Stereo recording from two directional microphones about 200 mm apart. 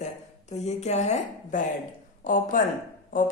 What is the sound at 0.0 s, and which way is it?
A woman's voice, 35° left (ahead or behind).